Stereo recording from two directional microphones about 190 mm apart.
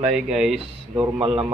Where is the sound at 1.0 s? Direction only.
25° right (ahead or behind).